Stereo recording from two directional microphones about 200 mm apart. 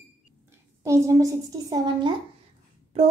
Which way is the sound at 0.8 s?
15° right (ahead or behind).